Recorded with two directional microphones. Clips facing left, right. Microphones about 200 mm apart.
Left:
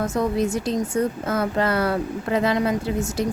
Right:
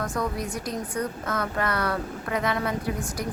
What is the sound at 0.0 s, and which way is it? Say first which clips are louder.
Speech: left 7 dB; 25° left (ahead or behind).